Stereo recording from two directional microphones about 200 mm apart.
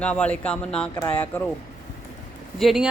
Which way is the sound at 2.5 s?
Centre (ahead or behind).